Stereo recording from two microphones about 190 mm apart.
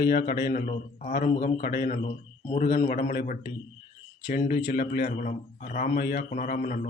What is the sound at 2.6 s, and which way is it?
A man's voice, 50° left (ahead or behind).